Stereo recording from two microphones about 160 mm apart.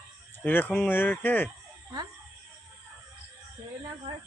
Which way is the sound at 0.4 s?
10° left (ahead or behind).